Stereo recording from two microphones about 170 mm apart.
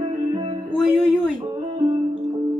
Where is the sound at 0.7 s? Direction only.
5° right (ahead or behind).